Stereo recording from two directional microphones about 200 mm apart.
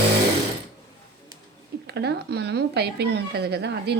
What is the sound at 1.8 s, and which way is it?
A woman's voice, 55° right (ahead or behind).